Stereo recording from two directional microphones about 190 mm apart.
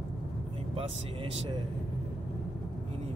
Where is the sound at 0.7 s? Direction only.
30° right (ahead or behind).